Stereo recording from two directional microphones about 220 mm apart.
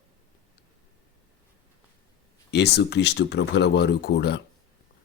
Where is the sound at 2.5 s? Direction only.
50° left (ahead or behind).